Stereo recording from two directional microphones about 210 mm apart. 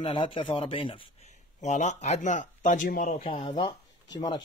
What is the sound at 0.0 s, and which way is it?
A man's voice, 25° left (ahead or behind).